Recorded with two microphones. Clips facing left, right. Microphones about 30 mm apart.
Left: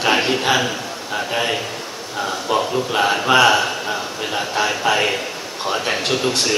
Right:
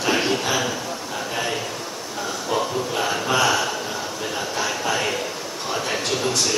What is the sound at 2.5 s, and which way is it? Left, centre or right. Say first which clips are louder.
A man's voice: left 4 dB; left.